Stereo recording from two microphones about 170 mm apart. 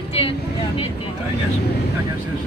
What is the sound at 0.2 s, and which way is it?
Speech, 35° left (ahead or behind).